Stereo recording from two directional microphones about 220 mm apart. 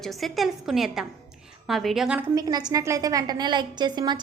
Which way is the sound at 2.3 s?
20° right (ahead or behind).